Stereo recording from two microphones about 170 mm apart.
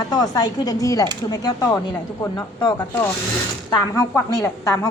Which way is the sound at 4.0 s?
20° left (ahead or behind).